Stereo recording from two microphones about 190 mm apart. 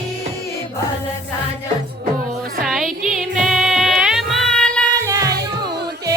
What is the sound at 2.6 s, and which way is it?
Music, centre (ahead or behind).